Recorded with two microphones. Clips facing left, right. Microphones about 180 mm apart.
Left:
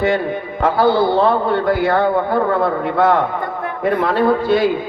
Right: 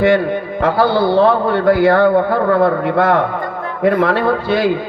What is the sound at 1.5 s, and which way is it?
A man's voice, 65° right (ahead or behind).